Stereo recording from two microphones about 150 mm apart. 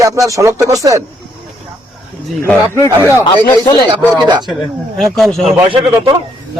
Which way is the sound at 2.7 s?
20° left (ahead or behind).